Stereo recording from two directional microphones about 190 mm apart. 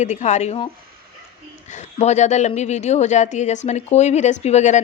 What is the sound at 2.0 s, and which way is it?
A woman's voice, 35° left (ahead or behind).